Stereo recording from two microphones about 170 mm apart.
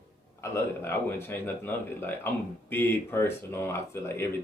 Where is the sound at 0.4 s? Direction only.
15° left (ahead or behind).